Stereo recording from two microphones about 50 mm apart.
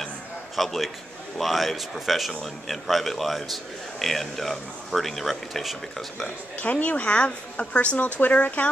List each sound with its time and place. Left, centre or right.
0.6 s a man's voice: centre
6.6 s speech: left